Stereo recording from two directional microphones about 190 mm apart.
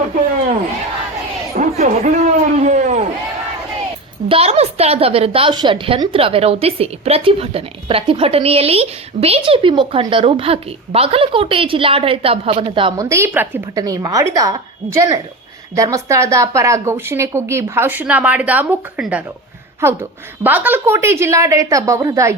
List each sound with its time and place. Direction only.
1.5 s a sound: 35° right (ahead or behind)
4.3 s a woman's voice: 30° right (ahead or behind)
13.1 s speech: 15° right (ahead or behind)
15.7 s speech: 15° right (ahead or behind)